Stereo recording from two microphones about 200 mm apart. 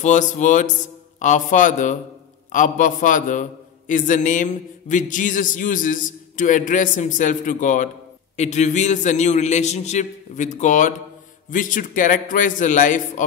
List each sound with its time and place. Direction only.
0.0 s a man's voice: 40° left (ahead or behind)